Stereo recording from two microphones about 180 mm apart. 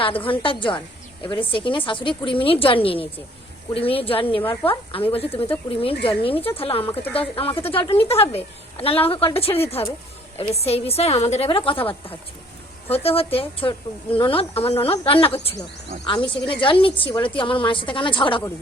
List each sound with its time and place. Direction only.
0.0 s a woman's voice: 30° left (ahead or behind)